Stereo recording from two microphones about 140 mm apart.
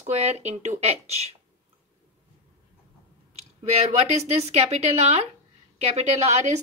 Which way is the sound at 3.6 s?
50° right (ahead or behind).